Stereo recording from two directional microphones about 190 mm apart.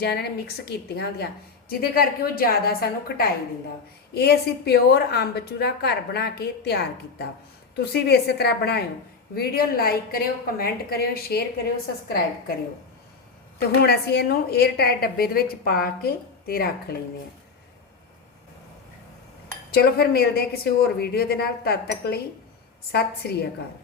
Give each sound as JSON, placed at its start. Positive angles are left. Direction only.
{"t": 0.0, "sound": "a woman's voice", "side_deg": 55}
{"t": 13.6, "sound": "a woman's voice", "side_deg": 60}
{"t": 19.7, "sound": "a woman's voice", "side_deg": 55}